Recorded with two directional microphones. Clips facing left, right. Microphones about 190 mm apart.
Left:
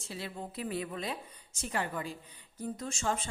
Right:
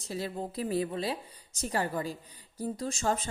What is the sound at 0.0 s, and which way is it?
A woman's voice, 40° right (ahead or behind).